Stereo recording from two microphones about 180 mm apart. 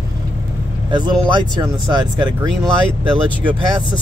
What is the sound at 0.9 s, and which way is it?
Speech, 25° right (ahead or behind).